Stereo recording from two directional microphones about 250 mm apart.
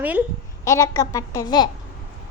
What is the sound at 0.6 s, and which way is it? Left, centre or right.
A child's voice, centre.